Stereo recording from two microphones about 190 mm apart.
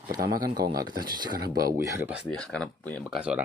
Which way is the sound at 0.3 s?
50° right (ahead or behind).